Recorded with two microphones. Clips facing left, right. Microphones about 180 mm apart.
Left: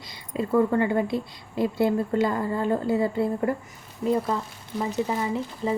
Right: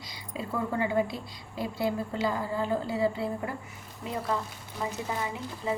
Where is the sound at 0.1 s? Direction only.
55° left (ahead or behind).